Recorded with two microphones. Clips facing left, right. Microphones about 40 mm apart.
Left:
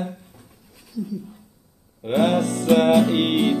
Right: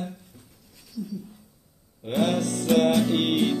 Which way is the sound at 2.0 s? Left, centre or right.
Centre.